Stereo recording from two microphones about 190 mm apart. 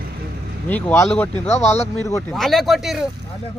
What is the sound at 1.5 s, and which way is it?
Speech, 35° left (ahead or behind).